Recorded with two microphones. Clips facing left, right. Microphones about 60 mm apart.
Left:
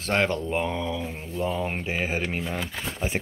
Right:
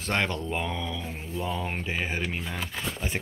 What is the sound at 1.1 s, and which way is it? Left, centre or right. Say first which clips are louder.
Speech: left 3 dB; centre.